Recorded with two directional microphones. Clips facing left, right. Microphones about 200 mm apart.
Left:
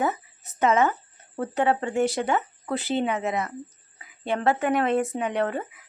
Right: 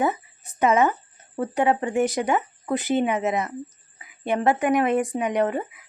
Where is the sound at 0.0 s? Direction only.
15° right (ahead or behind).